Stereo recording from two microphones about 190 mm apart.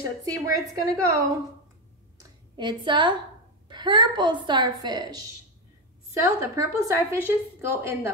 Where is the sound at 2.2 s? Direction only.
25° right (ahead or behind).